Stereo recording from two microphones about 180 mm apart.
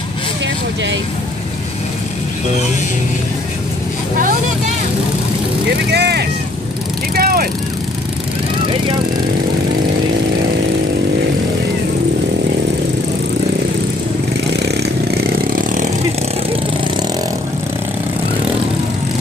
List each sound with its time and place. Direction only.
5.9 s speech: 65° right (ahead or behind)
7.2 s vehicle: 55° right (ahead or behind)
14.6 s vehicle: 65° right (ahead or behind)